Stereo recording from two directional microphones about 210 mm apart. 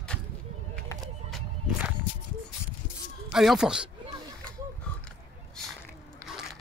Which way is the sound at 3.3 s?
Centre (ahead or behind).